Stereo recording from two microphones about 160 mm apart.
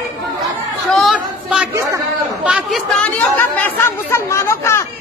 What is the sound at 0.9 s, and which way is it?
Chatter, centre (ahead or behind).